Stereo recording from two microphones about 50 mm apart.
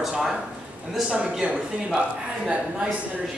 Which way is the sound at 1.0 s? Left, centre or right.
Right.